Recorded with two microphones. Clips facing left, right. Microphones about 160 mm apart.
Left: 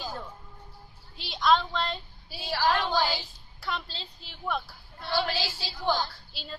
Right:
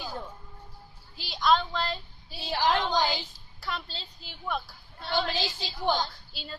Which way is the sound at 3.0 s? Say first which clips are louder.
Even; 15° right (ahead or behind).